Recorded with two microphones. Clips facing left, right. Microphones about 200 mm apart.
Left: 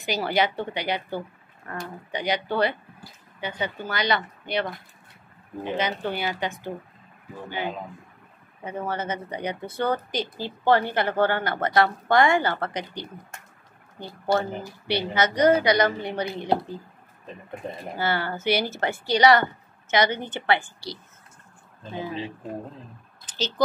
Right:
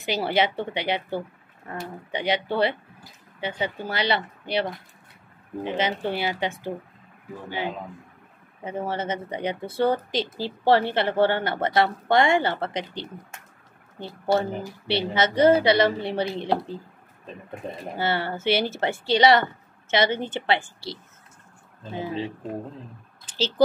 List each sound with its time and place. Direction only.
0.0 s a woman's voice: 25° right (ahead or behind)
2.0 s a woman's voice: 25° right (ahead or behind)
17.9 s a woman's voice: 25° right (ahead or behind)
23.2 s a sound: 30° right (ahead or behind)